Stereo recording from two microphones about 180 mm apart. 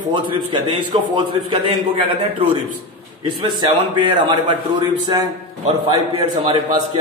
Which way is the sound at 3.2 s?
25° right (ahead or behind).